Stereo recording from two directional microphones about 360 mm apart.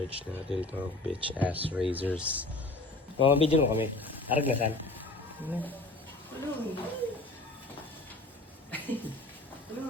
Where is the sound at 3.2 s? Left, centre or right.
Centre.